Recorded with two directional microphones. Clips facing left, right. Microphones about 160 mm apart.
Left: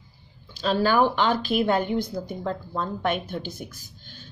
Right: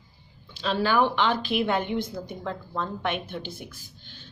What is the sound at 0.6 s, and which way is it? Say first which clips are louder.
A woman's voice: left 2 dB; 40° left (ahead or behind).